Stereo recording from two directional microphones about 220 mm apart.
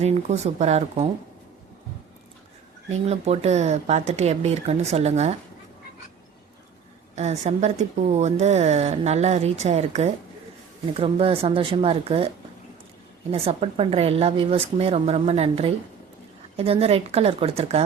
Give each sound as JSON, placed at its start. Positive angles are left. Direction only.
{"t": 0.0, "sound": "speech", "side_deg": -30}
{"t": 2.9, "sound": "speech", "side_deg": -30}
{"t": 7.2, "sound": "a woman's voice", "side_deg": -30}
{"t": 13.3, "sound": "speech", "side_deg": -25}